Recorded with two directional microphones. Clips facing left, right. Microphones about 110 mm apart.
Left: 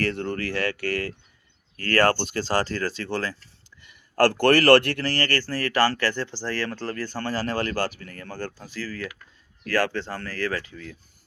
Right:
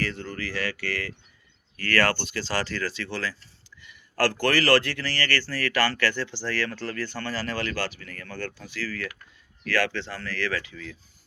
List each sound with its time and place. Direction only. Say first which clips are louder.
0.0 s speech: left 5 dB; 65° left (ahead or behind)
1.7 s speech: left 3 dB; 40° left (ahead or behind)